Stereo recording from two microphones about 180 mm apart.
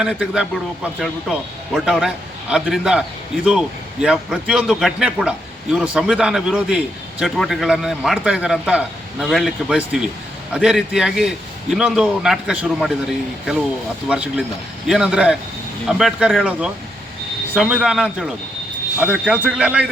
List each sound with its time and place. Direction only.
0.0 s a man's voice: 5° right (ahead or behind)
4.0 s a man's voice: 5° right (ahead or behind)
14.1 s a man's voice: 5° right (ahead or behind)